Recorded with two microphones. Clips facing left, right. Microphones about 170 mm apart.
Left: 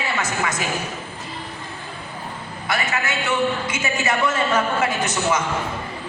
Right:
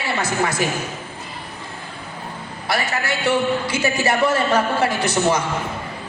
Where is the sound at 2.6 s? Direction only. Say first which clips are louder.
Right 2 dB; 35° right (ahead or behind).